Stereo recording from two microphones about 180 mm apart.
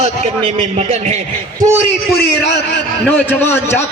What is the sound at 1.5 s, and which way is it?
Speech, 15° right (ahead or behind).